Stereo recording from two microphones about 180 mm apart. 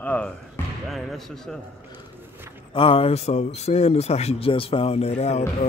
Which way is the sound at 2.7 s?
30° left (ahead or behind).